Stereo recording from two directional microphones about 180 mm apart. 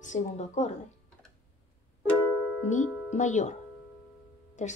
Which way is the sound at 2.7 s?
40° left (ahead or behind).